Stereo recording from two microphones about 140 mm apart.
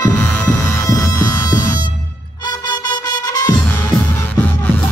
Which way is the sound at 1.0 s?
15° left (ahead or behind).